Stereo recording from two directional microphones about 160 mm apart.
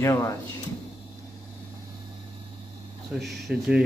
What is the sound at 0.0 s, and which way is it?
Speech, 15° left (ahead or behind).